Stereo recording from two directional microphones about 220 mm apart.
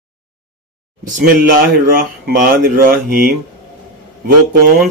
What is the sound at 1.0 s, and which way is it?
Speech, 35° right (ahead or behind).